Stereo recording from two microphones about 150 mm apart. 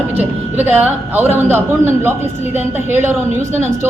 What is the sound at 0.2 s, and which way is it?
A man's voice, 15° right (ahead or behind).